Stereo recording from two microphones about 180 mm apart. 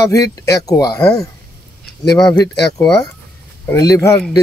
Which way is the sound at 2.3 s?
20° left (ahead or behind).